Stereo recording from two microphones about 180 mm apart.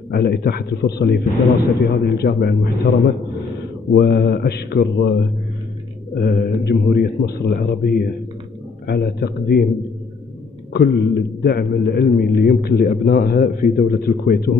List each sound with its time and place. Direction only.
0.1 s a man's voice: 60° left (ahead or behind)
3.9 s a man's voice: 65° left (ahead or behind)
10.7 s a man's voice: 70° left (ahead or behind)